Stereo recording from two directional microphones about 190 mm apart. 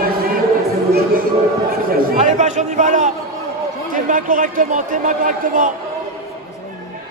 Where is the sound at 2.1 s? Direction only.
35° right (ahead or behind).